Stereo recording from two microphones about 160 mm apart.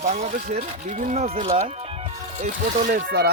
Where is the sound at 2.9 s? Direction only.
80° right.